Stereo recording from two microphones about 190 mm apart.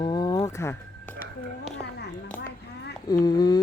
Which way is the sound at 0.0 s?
25° left (ahead or behind).